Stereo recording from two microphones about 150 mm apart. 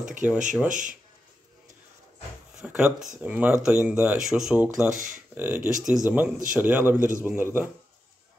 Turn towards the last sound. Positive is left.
turn(degrees=-15)  # may be behind; listen again after turning